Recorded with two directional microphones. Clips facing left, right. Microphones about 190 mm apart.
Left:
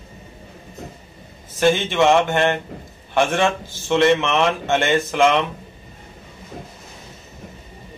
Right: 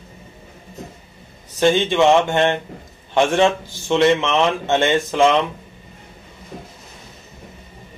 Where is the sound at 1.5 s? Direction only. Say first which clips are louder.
Right 2 dB; 15° right (ahead or behind).